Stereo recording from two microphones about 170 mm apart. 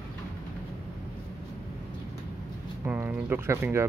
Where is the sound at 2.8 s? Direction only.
10° right (ahead or behind).